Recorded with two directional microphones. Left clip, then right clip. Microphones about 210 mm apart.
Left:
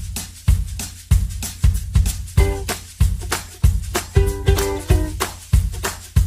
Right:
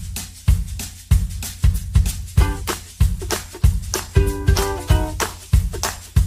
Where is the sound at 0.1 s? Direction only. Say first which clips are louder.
Left 1 dB; centre (ahead or behind).